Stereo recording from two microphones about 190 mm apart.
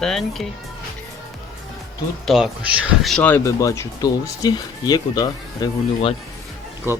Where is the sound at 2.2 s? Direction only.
Centre (ahead or behind); by 5.7 s 20° left (ahead or behind).